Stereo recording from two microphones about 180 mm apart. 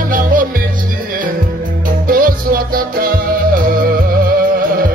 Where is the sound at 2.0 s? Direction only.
50° right (ahead or behind).